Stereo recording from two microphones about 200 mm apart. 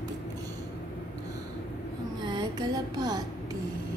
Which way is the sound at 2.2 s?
20° right (ahead or behind).